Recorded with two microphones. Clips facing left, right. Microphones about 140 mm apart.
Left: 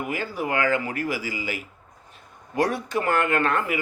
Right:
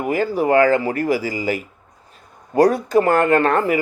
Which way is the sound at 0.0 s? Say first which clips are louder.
Right 9 dB; 40° right (ahead or behind).